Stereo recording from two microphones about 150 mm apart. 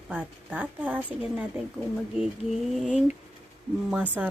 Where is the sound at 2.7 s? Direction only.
Centre (ahead or behind).